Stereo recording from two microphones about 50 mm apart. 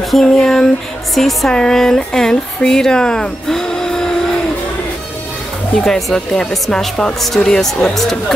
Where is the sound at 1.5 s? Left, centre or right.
Centre.